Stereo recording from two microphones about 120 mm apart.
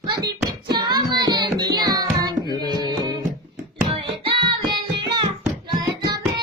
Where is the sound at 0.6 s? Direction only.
35° right (ahead or behind).